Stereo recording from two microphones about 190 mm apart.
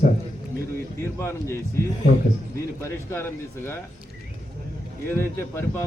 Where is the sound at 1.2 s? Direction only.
15° left (ahead or behind).